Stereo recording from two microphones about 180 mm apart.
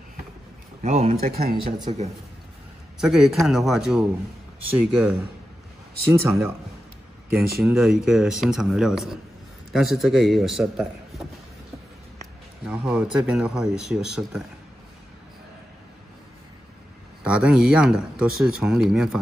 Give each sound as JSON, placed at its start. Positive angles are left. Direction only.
{"t": 0.8, "sound": "speech", "side_deg": -40}
{"t": 1.2, "sound": "speech", "side_deg": -55}
{"t": 1.9, "sound": "speech", "side_deg": -35}
{"t": 3.0, "sound": "a man's voice", "side_deg": 0}
{"t": 7.3, "sound": "a man's voice", "side_deg": -5}
{"t": 12.6, "sound": "a man's voice", "side_deg": -5}
{"t": 17.2, "sound": "a man's voice", "side_deg": -5}